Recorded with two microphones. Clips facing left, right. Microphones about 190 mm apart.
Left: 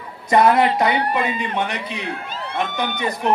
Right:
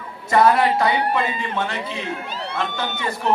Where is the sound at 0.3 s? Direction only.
20° left (ahead or behind).